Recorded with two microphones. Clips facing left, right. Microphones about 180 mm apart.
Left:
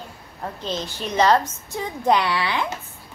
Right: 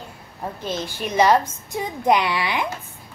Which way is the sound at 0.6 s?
10° right (ahead or behind).